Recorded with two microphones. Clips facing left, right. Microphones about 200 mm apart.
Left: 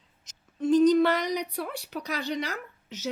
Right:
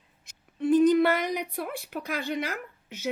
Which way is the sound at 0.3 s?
55° right (ahead or behind).